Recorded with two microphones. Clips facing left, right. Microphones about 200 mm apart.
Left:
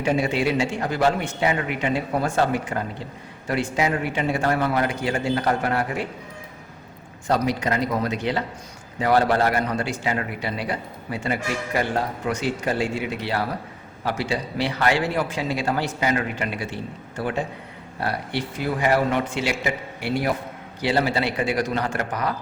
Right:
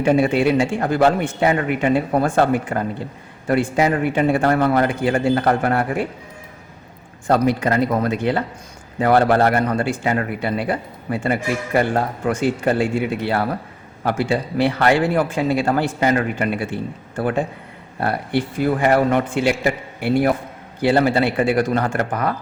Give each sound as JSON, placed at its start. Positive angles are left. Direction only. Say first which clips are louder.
{"t": 0.0, "sound": "a man's voice", "louder": "right 6 dB", "side_deg": -55}
{"t": 7.3, "sound": "a man's voice", "louder": "right 5 dB", "side_deg": -55}